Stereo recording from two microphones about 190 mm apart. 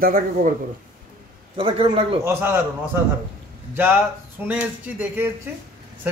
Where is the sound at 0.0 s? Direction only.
50° right (ahead or behind).